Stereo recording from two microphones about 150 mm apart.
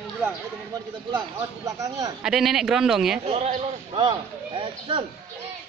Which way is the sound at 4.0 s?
30° right (ahead or behind).